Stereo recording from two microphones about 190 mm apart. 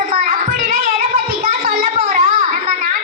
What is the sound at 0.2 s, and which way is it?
Child singing, 50° right (ahead or behind).